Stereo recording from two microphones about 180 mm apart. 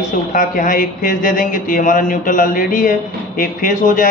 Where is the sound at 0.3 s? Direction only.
50° left (ahead or behind).